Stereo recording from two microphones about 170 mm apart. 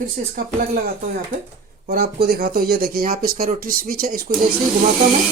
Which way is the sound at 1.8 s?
60° right (ahead or behind).